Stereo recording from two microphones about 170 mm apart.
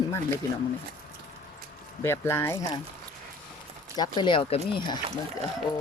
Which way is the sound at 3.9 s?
25° left (ahead or behind).